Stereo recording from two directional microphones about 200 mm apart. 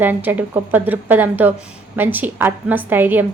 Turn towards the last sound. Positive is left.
turn(degrees=-10)  # may be behind; listen again after turning